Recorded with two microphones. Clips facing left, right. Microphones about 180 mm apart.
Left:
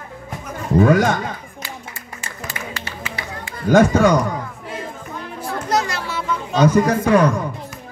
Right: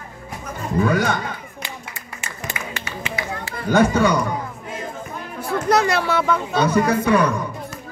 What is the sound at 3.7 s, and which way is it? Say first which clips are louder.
Speech: left 3 dB; 45° left (ahead or behind).